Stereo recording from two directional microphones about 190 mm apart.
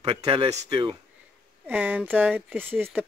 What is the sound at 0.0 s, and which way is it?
Speech, 25° right (ahead or behind).